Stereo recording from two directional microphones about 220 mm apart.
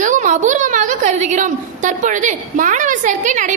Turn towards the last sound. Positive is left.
turn(degrees=-35)  # may be behind; listen again after turning